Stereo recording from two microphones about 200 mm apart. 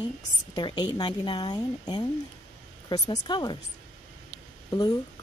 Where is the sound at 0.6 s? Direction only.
20° left (ahead or behind).